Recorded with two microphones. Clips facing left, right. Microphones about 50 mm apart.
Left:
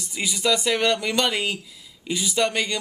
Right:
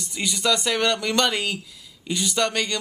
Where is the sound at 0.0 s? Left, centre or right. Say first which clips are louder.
Even; centre.